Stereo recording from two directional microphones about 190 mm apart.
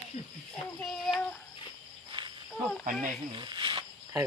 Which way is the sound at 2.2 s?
25° right (ahead or behind).